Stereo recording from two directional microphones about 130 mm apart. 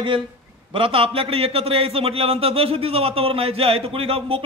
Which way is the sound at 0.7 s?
45° right (ahead or behind).